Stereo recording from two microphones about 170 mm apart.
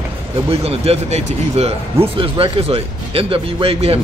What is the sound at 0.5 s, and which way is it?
A man's voice, 35° right (ahead or behind).